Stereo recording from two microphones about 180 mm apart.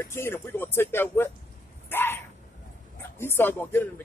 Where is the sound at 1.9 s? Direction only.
10° left (ahead or behind).